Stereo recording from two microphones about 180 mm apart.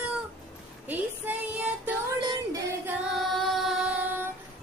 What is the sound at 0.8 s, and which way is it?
Speech, 10° right (ahead or behind).